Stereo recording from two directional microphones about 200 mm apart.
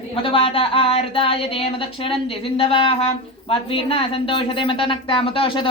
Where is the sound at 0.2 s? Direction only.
25° left (ahead or behind).